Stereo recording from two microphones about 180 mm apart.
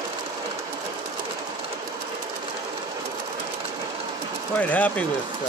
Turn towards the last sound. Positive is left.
turn(degrees=10)  # may be behind; listen again after turning